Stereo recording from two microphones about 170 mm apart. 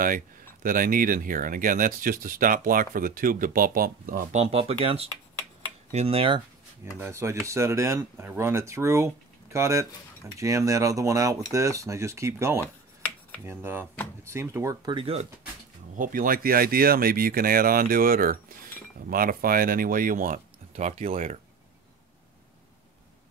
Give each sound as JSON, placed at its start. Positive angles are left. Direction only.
{"t": 0.0, "sound": "speech", "side_deg": -55}
{"t": 4.4, "sound": "speech", "side_deg": -35}
{"t": 7.0, "sound": "speech", "side_deg": -15}
{"t": 16.0, "sound": "speech", "side_deg": -55}
{"t": 20.7, "sound": "speech", "side_deg": -40}